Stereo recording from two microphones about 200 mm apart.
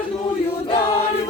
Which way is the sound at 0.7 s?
25° left (ahead or behind).